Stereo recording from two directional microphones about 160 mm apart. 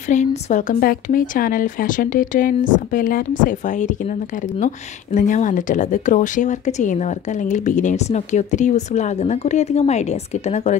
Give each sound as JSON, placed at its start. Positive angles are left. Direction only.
{"t": 0.1, "sound": "speech", "side_deg": 50}